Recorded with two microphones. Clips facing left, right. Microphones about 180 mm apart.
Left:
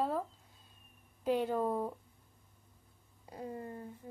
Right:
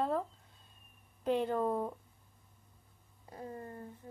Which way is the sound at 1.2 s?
5° left (ahead or behind).